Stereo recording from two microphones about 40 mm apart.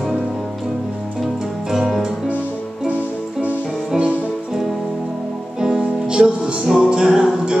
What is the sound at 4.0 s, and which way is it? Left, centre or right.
Music, right.